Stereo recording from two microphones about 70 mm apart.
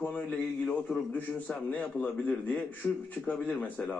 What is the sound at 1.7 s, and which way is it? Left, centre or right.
Speech, left.